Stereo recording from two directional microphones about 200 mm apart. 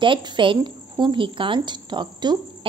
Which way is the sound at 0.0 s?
25° right (ahead or behind).